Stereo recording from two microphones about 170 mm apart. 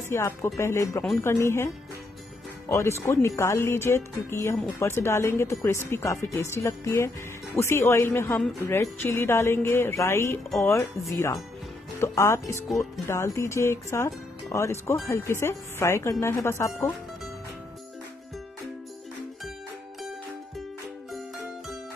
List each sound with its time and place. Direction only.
0.1 s speech: 15° left (ahead or behind)
2.7 s speech: 15° left (ahead or behind)
21.1 s music: centre (ahead or behind)